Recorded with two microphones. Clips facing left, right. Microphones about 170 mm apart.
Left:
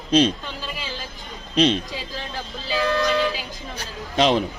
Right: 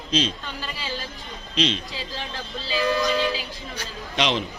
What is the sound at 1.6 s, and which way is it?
Speech, 50° left (ahead or behind).